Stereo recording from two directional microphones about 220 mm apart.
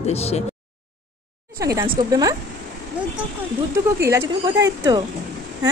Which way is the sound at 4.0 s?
15° right (ahead or behind).